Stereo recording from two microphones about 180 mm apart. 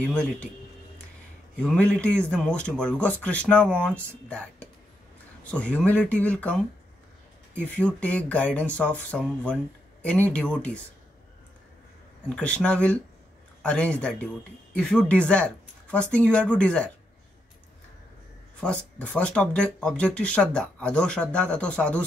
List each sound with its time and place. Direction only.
0.1 s speech: 5° left (ahead or behind)
1.6 s speech: 5° left (ahead or behind)
7.6 s speech: 10° left (ahead or behind)
12.3 s speech: 5° left (ahead or behind)
18.6 s speech: 5° left (ahead or behind)